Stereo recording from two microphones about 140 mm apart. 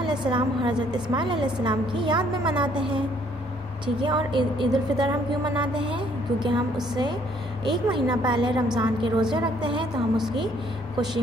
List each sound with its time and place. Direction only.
0.0 s a woman's voice: 35° right (ahead or behind)
4.0 s a woman's voice: 35° right (ahead or behind)
7.6 s a woman's voice: 35° right (ahead or behind)